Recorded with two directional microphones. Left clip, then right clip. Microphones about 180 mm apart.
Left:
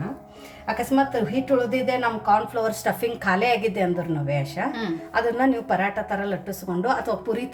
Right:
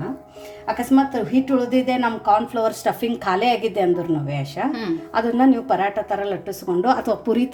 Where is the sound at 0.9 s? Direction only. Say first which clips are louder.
Right 4 dB; 20° right (ahead or behind).